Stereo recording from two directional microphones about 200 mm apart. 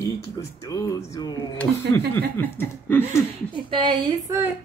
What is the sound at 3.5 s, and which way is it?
Speech, 25° right (ahead or behind).